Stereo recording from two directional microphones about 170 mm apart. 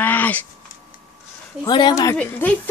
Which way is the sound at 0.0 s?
10° left (ahead or behind).